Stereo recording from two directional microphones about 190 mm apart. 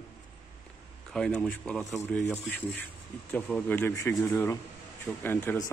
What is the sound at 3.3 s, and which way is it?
Speech, 5° left (ahead or behind).